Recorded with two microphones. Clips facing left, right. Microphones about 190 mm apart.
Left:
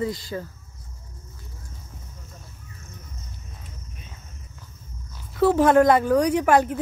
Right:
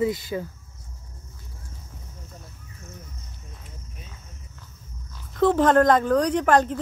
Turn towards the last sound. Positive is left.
turn(degrees=10)  # may be behind; listen again after turning